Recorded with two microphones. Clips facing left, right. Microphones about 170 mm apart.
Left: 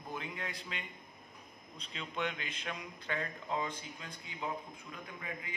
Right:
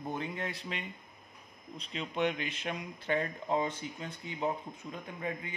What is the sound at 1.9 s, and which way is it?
Speech, 20° right (ahead or behind).